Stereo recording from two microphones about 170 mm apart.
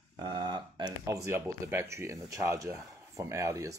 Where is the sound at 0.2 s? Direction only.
25° right (ahead or behind).